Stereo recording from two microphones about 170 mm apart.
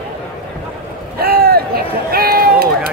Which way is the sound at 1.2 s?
65° right (ahead or behind).